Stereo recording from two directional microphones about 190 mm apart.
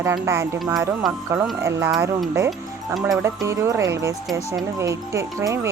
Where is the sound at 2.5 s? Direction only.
Centre (ahead or behind).